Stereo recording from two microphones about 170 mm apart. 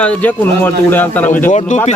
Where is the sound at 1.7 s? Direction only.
45° left (ahead or behind).